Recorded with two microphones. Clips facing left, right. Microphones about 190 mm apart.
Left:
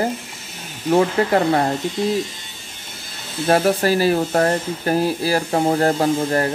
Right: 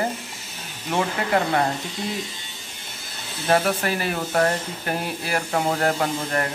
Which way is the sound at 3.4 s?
35° left (ahead or behind).